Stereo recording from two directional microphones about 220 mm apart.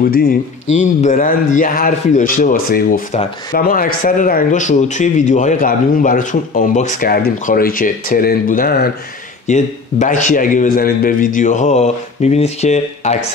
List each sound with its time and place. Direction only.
0.0 s speech: 40° left (ahead or behind)